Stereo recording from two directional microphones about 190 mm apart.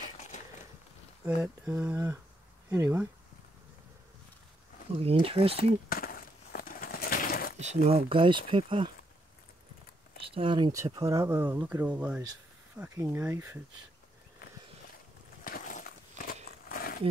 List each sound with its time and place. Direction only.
1.2 s speech: 10° right (ahead or behind)
5.0 s speech: 30° right (ahead or behind)
5.6 s a sound: 50° left (ahead or behind)
7.5 s speech: 35° right (ahead or behind)
10.2 s speech: 30° right (ahead or behind)
15.4 s a sound: 50° left (ahead or behind)